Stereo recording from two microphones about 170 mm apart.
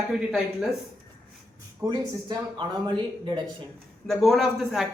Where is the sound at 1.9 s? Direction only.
25° right (ahead or behind).